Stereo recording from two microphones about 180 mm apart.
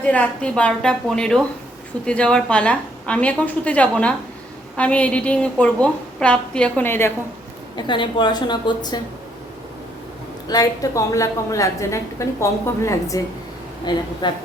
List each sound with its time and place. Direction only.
0.0 s a woman's voice: 5° left (ahead or behind)
7.8 s a woman's voice: 25° left (ahead or behind)
10.5 s a woman's voice: 20° left (ahead or behind)